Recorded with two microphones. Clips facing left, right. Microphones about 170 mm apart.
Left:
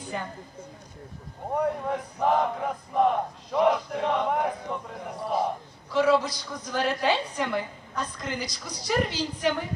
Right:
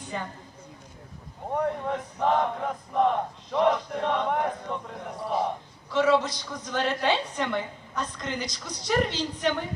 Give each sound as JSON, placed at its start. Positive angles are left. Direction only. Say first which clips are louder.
{"t": 0.1, "sound": "speech", "louder": "even", "side_deg": 5}
{"t": 1.5, "sound": "a sound", "louder": "left 1 dB", "side_deg": 0}
{"t": 8.5, "sound": "a woman's voice", "louder": "right 1 dB", "side_deg": 5}